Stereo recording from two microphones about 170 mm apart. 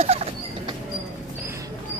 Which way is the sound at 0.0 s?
35° right (ahead or behind).